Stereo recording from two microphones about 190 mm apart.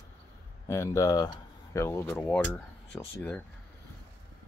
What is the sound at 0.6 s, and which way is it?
Speech, 15° left (ahead or behind).